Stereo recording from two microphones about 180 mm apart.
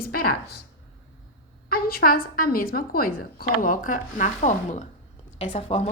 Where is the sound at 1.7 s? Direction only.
55° left (ahead or behind).